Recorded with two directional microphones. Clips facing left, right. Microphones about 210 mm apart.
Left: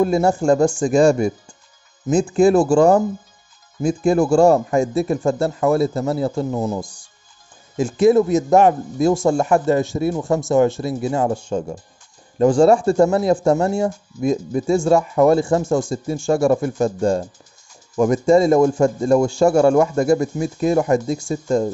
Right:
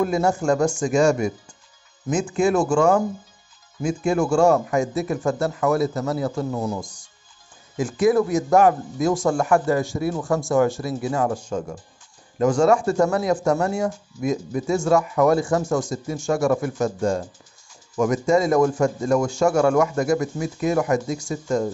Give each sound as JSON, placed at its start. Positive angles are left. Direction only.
{"t": 0.0, "sound": "speech", "side_deg": 30}